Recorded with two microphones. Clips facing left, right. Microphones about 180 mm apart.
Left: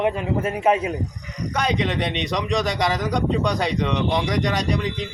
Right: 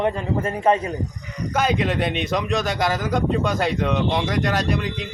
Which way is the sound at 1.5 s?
5° right (ahead or behind).